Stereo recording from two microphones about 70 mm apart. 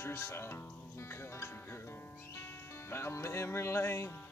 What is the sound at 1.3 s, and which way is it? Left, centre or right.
Music, left.